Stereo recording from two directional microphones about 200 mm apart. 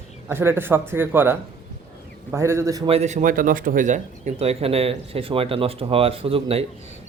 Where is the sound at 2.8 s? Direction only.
30° right (ahead or behind).